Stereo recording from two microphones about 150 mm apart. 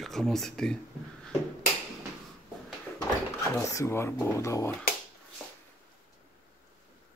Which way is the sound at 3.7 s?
20° left (ahead or behind).